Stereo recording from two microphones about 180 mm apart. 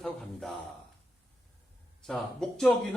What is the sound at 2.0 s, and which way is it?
Speech, centre (ahead or behind).